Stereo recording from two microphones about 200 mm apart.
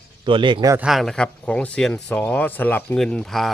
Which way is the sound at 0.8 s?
Centre (ahead or behind).